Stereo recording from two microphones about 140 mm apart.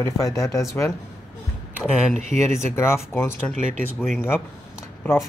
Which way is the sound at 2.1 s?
60° right (ahead or behind).